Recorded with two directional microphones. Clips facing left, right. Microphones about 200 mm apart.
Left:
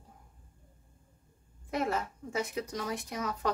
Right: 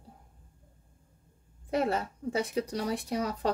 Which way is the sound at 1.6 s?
30° right (ahead or behind).